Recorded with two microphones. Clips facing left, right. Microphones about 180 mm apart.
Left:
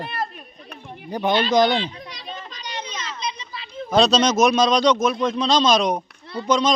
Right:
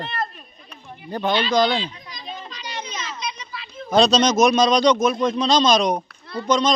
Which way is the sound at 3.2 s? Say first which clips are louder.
Left 1 dB; 25° left (ahead or behind).